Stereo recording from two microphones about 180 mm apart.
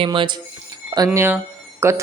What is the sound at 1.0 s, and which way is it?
Speech, 10° right (ahead or behind).